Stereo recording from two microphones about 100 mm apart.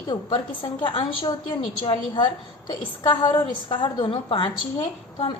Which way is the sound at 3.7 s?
55° left (ahead or behind).